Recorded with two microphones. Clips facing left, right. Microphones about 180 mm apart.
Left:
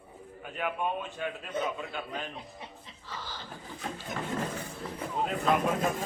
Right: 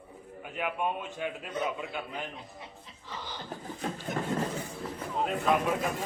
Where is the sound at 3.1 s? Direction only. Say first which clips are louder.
Right 1 dB; 20° right (ahead or behind).